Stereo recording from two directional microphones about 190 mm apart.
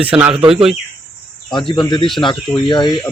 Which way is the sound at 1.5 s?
25° left (ahead or behind).